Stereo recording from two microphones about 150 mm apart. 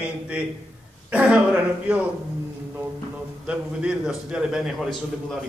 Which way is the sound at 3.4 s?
5° right (ahead or behind).